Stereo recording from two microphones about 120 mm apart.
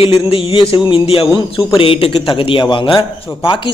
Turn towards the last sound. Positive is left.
turn(degrees=45)  # may be behind; listen again after turning